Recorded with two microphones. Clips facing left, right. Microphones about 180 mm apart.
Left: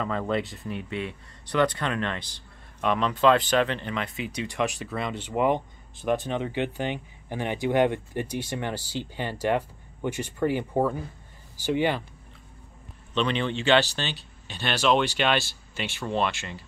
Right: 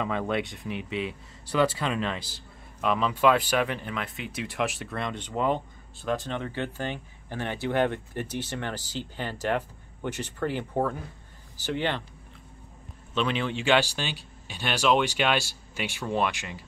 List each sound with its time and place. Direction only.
0.0 s speech: 5° right (ahead or behind)
0.7 s speech: 90° right
0.9 s speech: 5° right (ahead or behind); by 12.0 s 10° left (ahead or behind)
13.1 s speech: 5° right (ahead or behind)